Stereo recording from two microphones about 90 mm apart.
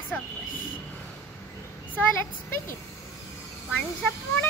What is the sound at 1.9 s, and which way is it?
Speech, 25° left (ahead or behind).